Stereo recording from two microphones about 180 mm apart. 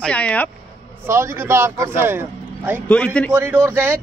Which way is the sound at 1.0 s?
15° right (ahead or behind).